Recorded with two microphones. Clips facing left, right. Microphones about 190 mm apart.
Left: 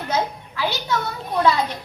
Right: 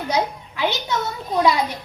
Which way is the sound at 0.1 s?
20° right (ahead or behind).